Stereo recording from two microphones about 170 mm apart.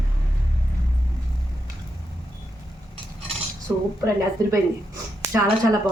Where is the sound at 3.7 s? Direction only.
10° right (ahead or behind).